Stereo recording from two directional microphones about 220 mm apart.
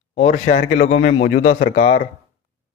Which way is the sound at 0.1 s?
30° left (ahead or behind).